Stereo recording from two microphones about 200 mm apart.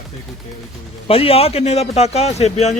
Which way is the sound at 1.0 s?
30° left (ahead or behind).